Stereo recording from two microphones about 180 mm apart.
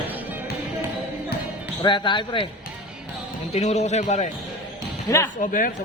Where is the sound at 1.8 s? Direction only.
25° left (ahead or behind).